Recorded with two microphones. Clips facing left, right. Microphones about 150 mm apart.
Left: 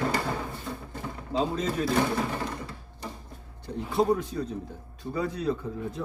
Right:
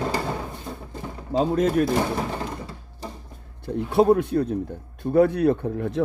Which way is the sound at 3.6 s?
60° right (ahead or behind).